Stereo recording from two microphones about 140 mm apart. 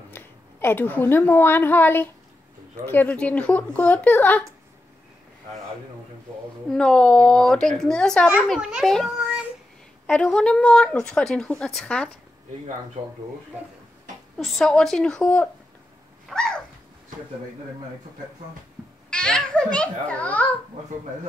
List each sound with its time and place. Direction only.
0.1 s a woman's voice: 15° left (ahead or behind)
6.7 s speech: 5° left (ahead or behind)
8.5 s a woman's voice: 5° right (ahead or behind)
14.4 s speech: centre (ahead or behind)
16.3 s a sound: 5° left (ahead or behind)
19.0 s a child's voice: 5° left (ahead or behind)